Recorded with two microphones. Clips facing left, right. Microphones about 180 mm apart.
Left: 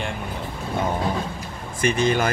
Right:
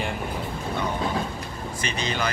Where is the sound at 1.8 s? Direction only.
50° left (ahead or behind).